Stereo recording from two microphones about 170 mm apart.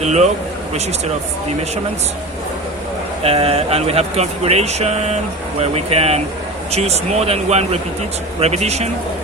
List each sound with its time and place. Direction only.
0.0 s speech: 40° right (ahead or behind)
3.2 s speech: 35° right (ahead or behind)